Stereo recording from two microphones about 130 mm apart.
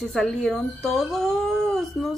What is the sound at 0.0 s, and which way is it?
Speech, 5° left (ahead or behind).